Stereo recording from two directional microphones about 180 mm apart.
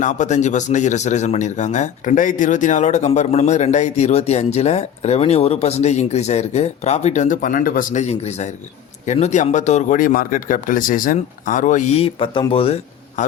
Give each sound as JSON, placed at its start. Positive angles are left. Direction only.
{"t": 0.0, "sound": "speech", "side_deg": 45}
{"t": 12.0, "sound": "speech", "side_deg": 25}